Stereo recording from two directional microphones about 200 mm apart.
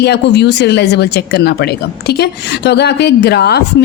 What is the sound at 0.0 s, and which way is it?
A woman's voice, 55° left (ahead or behind).